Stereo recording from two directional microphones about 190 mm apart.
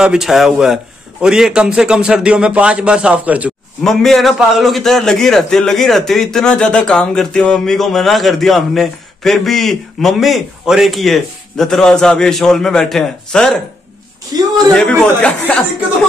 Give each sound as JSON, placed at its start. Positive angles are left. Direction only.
{"t": 0.0, "sound": "a man's voice", "side_deg": -5}
{"t": 14.3, "sound": "speech", "side_deg": -20}
{"t": 14.8, "sound": "a man's voice", "side_deg": 5}